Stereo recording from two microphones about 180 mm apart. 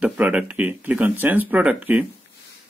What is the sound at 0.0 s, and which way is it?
Speech, 10° right (ahead or behind).